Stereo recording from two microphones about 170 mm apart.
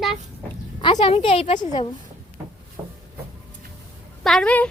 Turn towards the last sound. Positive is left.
turn(degrees=5)  # may be behind; listen again after turning